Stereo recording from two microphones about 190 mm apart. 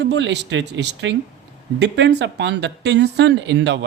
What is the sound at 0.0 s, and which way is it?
Speech, 65° right (ahead or behind).